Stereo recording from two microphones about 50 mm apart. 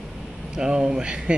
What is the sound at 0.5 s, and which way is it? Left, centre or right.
Speech, centre.